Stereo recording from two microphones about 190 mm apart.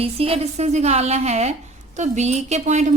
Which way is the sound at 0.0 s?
30° right (ahead or behind).